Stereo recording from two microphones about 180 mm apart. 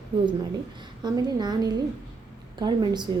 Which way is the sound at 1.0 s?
25° right (ahead or behind).